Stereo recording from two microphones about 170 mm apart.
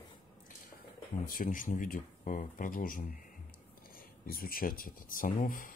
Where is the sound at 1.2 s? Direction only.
55° left (ahead or behind).